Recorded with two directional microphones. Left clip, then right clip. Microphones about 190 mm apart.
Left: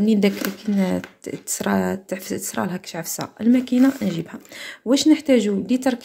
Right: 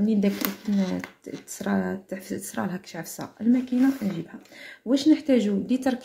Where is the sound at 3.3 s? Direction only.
45° left (ahead or behind); by 6.0 s 30° left (ahead or behind).